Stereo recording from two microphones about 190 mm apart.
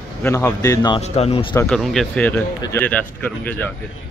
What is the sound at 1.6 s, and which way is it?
Speech, centre (ahead or behind).